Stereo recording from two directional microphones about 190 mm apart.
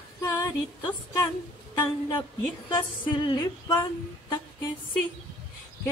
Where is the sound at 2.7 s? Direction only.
25° left (ahead or behind).